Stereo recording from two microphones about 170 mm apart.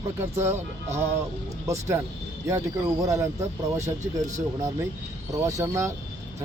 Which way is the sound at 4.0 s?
45° right (ahead or behind).